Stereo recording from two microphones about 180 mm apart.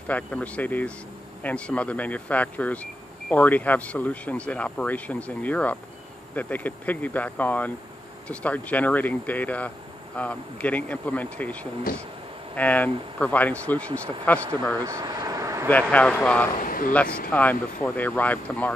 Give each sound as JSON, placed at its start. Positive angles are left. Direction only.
{"t": 0.1, "sound": "speech", "side_deg": 10}
{"t": 12.5, "sound": "speech", "side_deg": 10}
{"t": 14.8, "sound": "a sound", "side_deg": -20}
{"t": 15.9, "sound": "speech", "side_deg": 10}
{"t": 16.6, "sound": "a sound", "side_deg": 50}
{"t": 17.3, "sound": "speech", "side_deg": 10}